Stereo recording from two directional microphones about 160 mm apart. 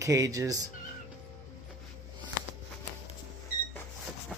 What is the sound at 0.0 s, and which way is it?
Speech, 20° right (ahead or behind).